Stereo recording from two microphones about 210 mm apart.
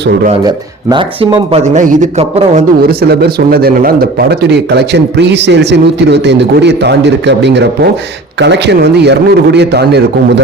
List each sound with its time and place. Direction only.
0.4 s speech: 20° right (ahead or behind)
3.0 s speech: 50° right (ahead or behind)